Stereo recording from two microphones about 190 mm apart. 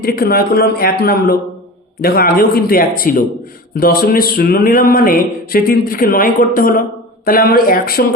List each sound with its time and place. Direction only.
0.0 s a man's voice: 55° left (ahead or behind)